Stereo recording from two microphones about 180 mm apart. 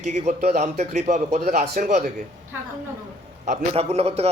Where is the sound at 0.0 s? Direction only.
40° right (ahead or behind).